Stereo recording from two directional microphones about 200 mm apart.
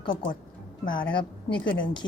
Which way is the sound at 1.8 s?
25° left (ahead or behind).